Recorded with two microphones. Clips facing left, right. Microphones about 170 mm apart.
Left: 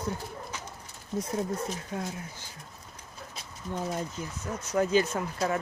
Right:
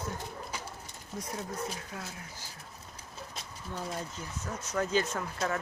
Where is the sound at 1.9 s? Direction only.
30° left (ahead or behind).